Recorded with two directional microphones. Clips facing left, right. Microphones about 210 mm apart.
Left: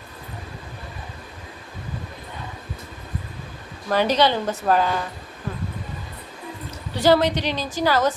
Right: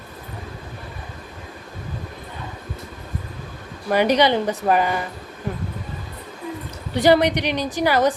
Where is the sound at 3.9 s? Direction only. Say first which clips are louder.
Right 2 dB; 15° right (ahead or behind).